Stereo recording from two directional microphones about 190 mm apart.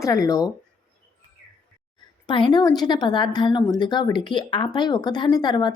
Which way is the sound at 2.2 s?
25° left (ahead or behind).